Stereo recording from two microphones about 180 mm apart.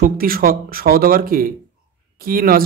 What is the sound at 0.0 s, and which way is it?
Speech, 55° right (ahead or behind).